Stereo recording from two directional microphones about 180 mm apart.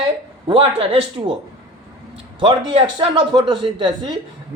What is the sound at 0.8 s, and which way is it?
Speech, 30° right (ahead or behind).